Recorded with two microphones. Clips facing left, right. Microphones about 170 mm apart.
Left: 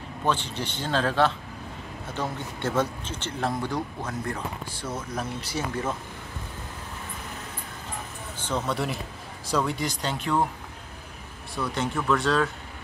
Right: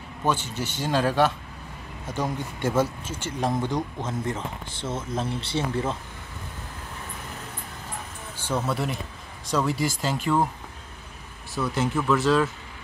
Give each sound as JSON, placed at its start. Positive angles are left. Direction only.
{"t": 0.2, "sound": "a man's voice", "side_deg": -10}
{"t": 8.5, "sound": "speech", "side_deg": -5}
{"t": 11.5, "sound": "speech", "side_deg": 0}